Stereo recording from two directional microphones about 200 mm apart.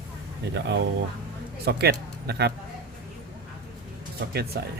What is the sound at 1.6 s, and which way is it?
Speech, 55° right (ahead or behind).